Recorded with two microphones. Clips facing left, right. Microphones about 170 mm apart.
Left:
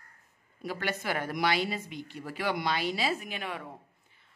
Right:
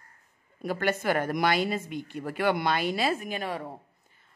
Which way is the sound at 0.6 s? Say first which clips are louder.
Right 6 dB; 50° right (ahead or behind).